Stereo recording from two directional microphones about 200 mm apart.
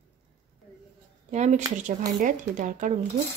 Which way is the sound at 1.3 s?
35° right (ahead or behind).